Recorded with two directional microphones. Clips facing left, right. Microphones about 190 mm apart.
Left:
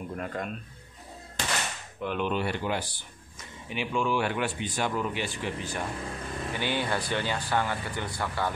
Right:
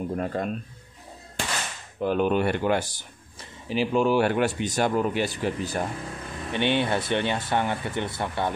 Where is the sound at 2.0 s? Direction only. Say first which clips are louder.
Right 7 dB; 40° right (ahead or behind).